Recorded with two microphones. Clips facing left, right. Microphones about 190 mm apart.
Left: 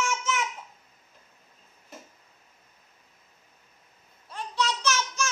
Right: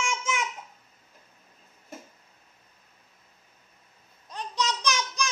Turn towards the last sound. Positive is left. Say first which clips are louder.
# left 1 dB
turn(degrees=-15)  # may be behind; listen again after turning